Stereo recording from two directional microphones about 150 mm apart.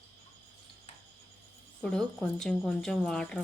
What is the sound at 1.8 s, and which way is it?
Speech, 5° left (ahead or behind).